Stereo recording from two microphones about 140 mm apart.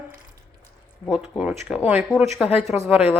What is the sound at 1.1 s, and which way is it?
Speech, 5° right (ahead or behind).